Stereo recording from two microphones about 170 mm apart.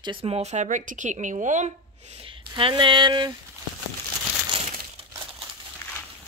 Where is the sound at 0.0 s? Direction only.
30° right (ahead or behind).